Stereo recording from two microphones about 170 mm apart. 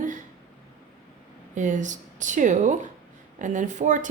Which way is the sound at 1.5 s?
45° right (ahead or behind).